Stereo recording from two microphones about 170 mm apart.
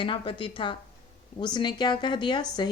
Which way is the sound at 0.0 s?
30° left (ahead or behind).